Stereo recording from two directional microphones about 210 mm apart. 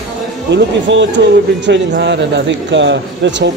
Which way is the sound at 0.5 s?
55° right (ahead or behind).